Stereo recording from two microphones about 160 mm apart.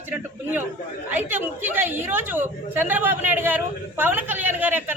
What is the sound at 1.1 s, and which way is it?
A woman's voice, 10° right (ahead or behind).